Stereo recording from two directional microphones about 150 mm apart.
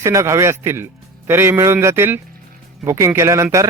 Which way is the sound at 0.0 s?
20° right (ahead or behind).